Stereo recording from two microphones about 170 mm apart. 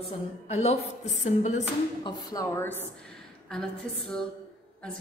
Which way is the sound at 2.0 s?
20° left (ahead or behind).